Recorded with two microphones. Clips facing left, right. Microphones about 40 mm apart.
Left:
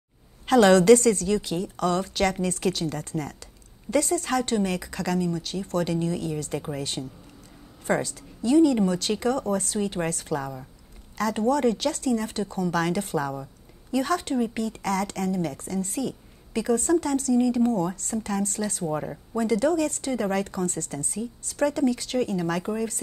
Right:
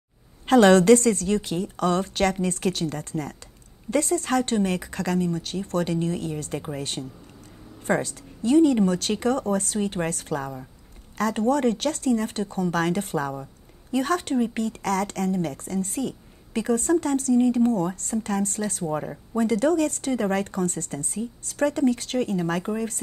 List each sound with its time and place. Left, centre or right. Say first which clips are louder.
0.5 s a woman's voice: right 1 dB; right